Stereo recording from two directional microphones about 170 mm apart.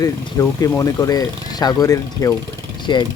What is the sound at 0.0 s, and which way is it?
Speech, 20° left (ahead or behind).